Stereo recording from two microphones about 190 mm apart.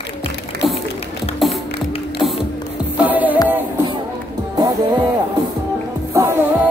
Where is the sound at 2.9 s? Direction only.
10° right (ahead or behind).